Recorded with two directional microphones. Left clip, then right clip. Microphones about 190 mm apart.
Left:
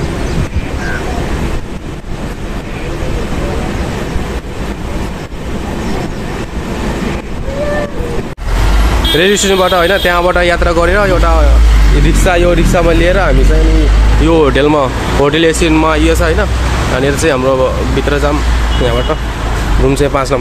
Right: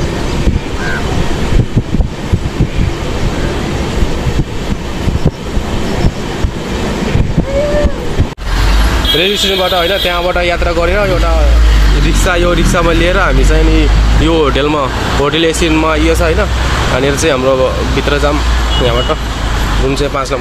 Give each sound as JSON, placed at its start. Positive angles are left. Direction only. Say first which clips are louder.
{"t": 9.2, "sound": "speech", "louder": "left 4 dB", "side_deg": 25}
{"t": 19.9, "sound": "speech", "louder": "left 4 dB", "side_deg": 25}